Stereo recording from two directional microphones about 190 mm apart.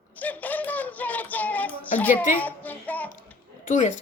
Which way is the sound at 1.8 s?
10° left (ahead or behind).